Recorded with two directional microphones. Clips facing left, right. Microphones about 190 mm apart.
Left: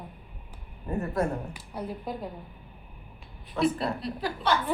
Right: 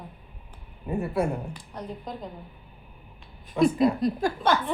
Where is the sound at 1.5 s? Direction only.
10° left (ahead or behind).